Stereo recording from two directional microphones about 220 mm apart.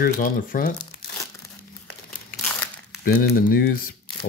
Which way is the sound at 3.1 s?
40° left (ahead or behind).